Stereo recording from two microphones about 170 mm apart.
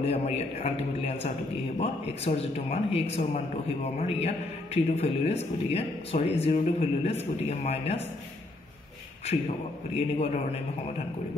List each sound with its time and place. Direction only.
0.0 s speech: 35° left (ahead or behind)
9.9 s speech: 40° left (ahead or behind)